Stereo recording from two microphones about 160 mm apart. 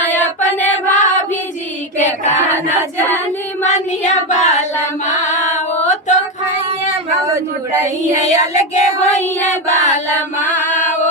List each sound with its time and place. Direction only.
0.3 s a sound: 50° left (ahead or behind)
3.6 s child singing: 45° left (ahead or behind)
5.5 s female singing: 45° left (ahead or behind)
7.3 s a sound: 15° right (ahead or behind)
8.3 s music: 45° left (ahead or behind)
9.6 s chant: 50° left (ahead or behind)